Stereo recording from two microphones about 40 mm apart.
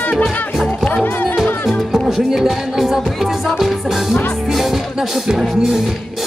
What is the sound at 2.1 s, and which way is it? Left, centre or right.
Music, centre.